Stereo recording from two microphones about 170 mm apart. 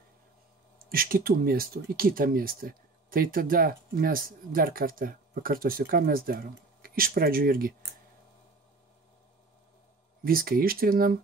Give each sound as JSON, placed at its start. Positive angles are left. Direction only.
{"t": 0.8, "sound": "speech", "side_deg": -60}
{"t": 10.2, "sound": "speech", "side_deg": -60}